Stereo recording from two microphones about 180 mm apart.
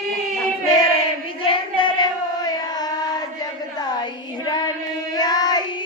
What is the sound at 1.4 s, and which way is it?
Carnatic music, 25° left (ahead or behind).